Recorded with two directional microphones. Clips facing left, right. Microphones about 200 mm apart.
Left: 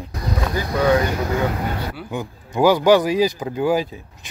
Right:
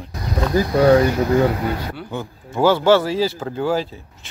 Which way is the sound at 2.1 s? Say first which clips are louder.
Left 1 dB; 15° left (ahead or behind).